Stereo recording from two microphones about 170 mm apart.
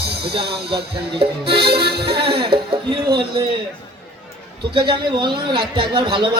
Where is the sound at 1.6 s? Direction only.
70° right (ahead or behind).